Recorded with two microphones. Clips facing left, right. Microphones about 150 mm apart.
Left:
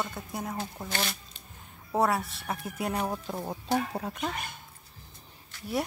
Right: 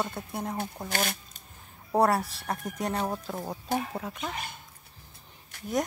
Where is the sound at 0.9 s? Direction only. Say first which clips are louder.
Right 3 dB; 45° right (ahead or behind).